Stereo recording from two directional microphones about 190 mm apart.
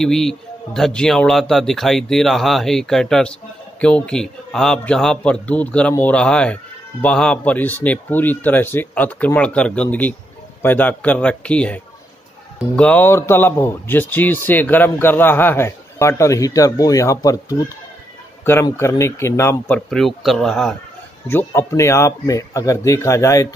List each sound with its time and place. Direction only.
0.0 s a man's voice: 5° left (ahead or behind)
19.9 s a man's voice: centre (ahead or behind); by 23.5 s 15° left (ahead or behind)